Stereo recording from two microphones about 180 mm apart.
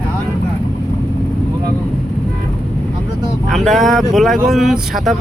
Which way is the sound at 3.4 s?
Centre (ahead or behind).